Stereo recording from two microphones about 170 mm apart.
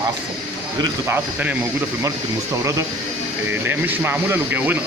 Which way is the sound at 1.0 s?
10° right (ahead or behind).